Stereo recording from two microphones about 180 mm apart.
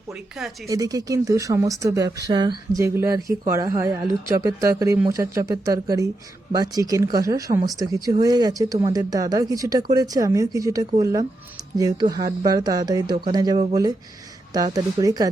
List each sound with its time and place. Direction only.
0.1 s speech: 5° right (ahead or behind)
0.7 s speech: 20° right (ahead or behind)